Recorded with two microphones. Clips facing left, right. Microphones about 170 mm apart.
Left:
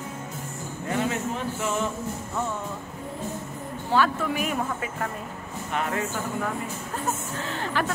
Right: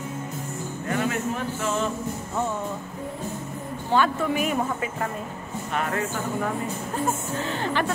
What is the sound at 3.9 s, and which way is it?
Speech, centre (ahead or behind).